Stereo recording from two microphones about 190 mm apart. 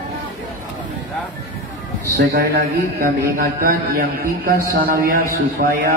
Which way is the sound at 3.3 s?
50° right (ahead or behind).